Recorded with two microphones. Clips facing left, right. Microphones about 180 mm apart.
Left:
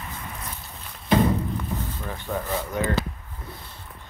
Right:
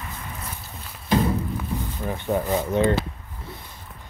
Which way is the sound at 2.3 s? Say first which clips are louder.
Right 6 dB; 25° right (ahead or behind).